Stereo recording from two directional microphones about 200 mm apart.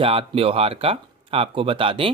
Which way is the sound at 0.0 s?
30° right (ahead or behind).